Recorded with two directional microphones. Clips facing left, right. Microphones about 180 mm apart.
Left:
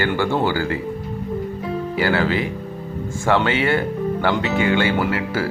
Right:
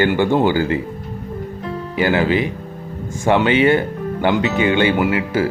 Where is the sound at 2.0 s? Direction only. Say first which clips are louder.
Right 4 dB; 20° right (ahead or behind).